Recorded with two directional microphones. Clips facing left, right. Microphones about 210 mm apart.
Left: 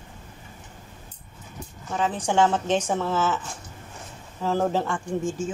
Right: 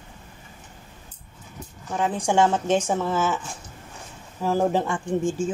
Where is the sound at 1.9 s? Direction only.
10° right (ahead or behind).